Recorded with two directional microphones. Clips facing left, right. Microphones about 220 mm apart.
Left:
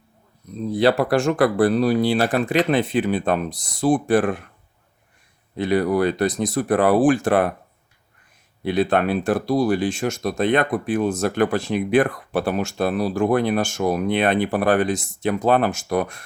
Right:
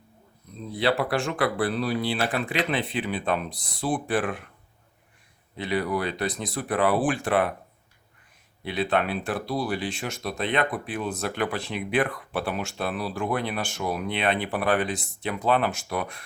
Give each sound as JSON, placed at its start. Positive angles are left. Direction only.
{"t": 0.7, "sound": "speech", "side_deg": 45}
{"t": 5.5, "sound": "speech", "side_deg": 45}
{"t": 8.6, "sound": "speech", "side_deg": 45}